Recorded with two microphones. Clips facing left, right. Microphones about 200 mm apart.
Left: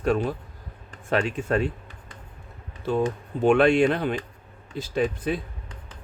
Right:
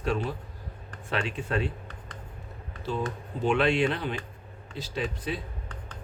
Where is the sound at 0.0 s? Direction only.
45° left (ahead or behind).